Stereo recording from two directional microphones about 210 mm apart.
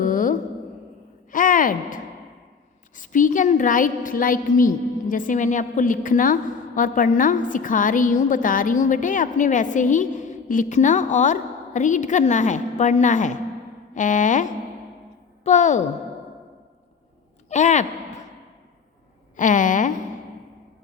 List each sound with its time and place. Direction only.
0.0 s a sound: 40° left (ahead or behind)
2.9 s a woman's voice: 40° left (ahead or behind)
17.5 s a woman's voice: 35° left (ahead or behind)
19.4 s a woman's voice: 40° left (ahead or behind)